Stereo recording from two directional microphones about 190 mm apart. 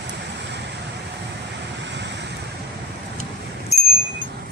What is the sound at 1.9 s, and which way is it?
Vehicle, 65° right (ahead or behind).